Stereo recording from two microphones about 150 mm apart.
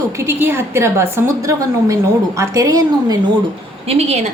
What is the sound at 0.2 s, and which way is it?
A woman's voice, 15° right (ahead or behind).